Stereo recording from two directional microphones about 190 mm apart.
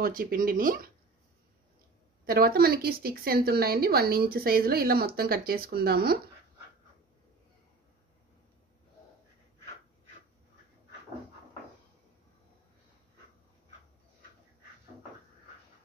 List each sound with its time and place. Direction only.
0.0 s a woman's voice: 50° right (ahead or behind)
2.2 s a woman's voice: 55° right (ahead or behind)